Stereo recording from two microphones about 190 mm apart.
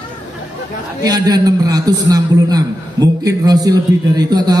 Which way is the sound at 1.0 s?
20° right (ahead or behind).